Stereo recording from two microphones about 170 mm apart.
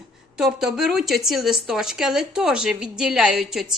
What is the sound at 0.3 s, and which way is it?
Speech, 5° right (ahead or behind).